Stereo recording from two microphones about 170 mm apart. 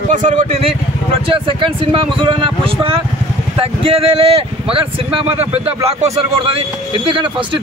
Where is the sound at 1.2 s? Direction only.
30° right (ahead or behind).